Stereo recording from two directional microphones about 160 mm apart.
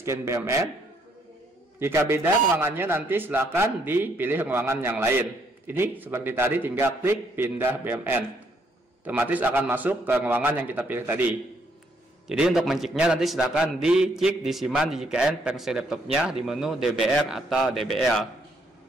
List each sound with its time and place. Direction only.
0.0 s a man's voice: 20° right (ahead or behind)
1.8 s a man's voice: 15° right (ahead or behind)